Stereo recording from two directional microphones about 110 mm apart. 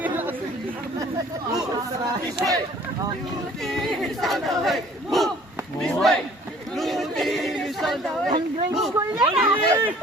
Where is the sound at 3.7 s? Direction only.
5° left (ahead or behind).